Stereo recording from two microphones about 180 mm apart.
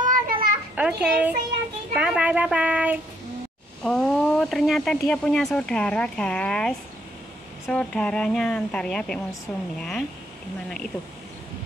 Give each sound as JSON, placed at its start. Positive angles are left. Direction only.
{"t": 0.0, "sound": "children playing", "side_deg": -50}
{"t": 0.7, "sound": "a child's voice", "side_deg": -5}
{"t": 3.8, "sound": "speech", "side_deg": 5}